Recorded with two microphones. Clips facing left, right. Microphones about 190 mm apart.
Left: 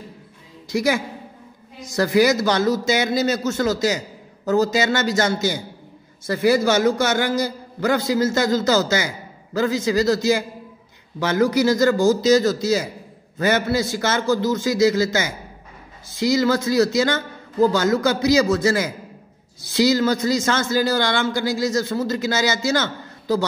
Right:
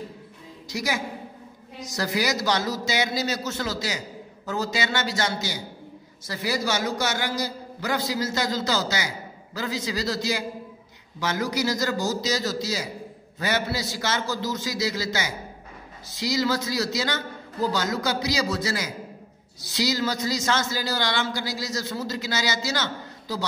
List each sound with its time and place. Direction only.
0.7 s a woman's voice: 55° left (ahead or behind)